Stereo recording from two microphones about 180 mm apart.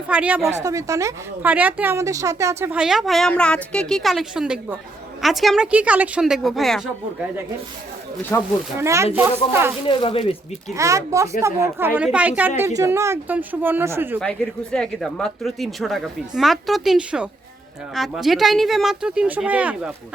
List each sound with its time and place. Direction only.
0.1 s speech: 10° right (ahead or behind)
0.6 s speech: 15° right (ahead or behind); by 6.8 s centre (ahead or behind)
8.3 s speech: 15° left (ahead or behind)
8.8 s speech: 15° right (ahead or behind)
9.8 s speech: 30° left (ahead or behind)
10.8 s speech: 15° right (ahead or behind)
14.2 s speech: 5° left (ahead or behind)